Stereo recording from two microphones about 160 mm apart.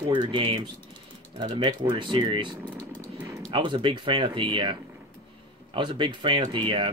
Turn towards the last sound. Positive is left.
turn(degrees=-30)  # may be behind; listen again after turning